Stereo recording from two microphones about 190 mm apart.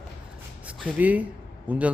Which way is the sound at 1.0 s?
10° right (ahead or behind).